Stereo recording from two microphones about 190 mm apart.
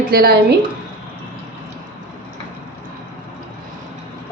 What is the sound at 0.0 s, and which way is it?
Speech, 55° right (ahead or behind).